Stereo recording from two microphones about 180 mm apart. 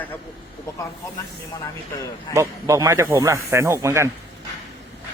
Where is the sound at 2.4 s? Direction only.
15° right (ahead or behind).